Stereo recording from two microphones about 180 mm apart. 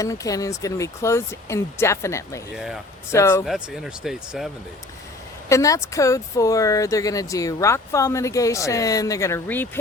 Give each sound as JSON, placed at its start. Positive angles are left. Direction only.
{"t": 0.0, "sound": "speech", "side_deg": 20}
{"t": 3.4, "sound": "speech", "side_deg": 0}
{"t": 5.5, "sound": "speech", "side_deg": 15}